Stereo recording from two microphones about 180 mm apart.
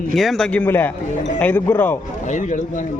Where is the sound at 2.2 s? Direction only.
45° left (ahead or behind).